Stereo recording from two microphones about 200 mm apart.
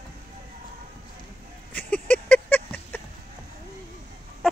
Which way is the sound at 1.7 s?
5° left (ahead or behind).